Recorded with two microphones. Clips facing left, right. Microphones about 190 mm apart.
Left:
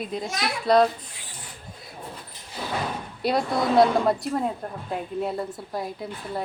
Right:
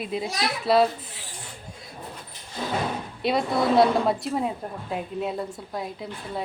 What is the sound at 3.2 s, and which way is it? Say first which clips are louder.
Speech: even; centre (ahead or behind).